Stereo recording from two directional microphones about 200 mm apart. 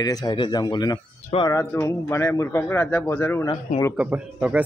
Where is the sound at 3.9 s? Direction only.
5° right (ahead or behind).